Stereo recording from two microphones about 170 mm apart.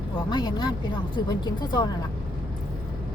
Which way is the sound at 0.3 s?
25° left (ahead or behind).